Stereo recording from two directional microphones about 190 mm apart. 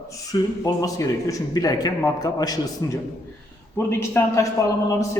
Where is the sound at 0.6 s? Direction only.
20° left (ahead or behind).